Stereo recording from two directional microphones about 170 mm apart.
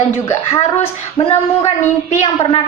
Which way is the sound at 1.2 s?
35° left (ahead or behind).